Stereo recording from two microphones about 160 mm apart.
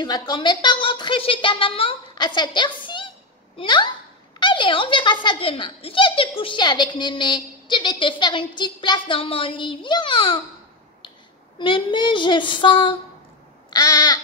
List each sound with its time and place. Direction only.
0.0 s a woman's voice: 25° left (ahead or behind)
11.5 s a child's voice: 30° left (ahead or behind)
13.7 s crow: 25° left (ahead or behind)